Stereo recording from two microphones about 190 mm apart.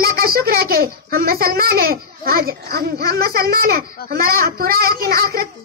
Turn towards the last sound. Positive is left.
turn(degrees=-50)  # may be behind; listen again after turning